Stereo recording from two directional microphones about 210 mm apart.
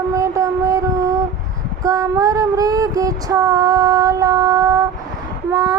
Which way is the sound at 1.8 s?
15° right (ahead or behind).